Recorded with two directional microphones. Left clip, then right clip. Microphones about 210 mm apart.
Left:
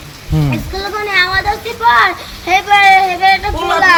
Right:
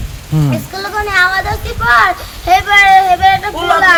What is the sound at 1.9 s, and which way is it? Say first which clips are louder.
Speech: right 1 dB; 10° right (ahead or behind).